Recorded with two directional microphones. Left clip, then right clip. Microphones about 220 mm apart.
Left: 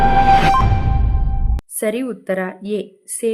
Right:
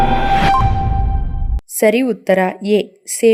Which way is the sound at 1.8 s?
20° right (ahead or behind).